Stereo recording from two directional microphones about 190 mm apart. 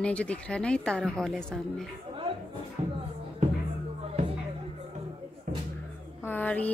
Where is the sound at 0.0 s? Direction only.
5° left (ahead or behind).